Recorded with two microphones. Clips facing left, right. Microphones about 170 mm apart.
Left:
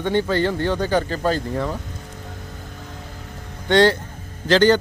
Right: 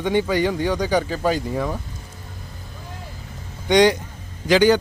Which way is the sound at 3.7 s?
15° right (ahead or behind).